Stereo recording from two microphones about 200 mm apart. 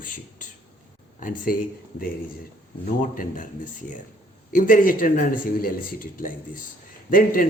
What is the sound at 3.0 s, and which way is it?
Speech, 40° left (ahead or behind).